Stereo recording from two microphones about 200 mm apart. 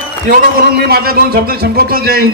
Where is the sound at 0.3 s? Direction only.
50° right (ahead or behind).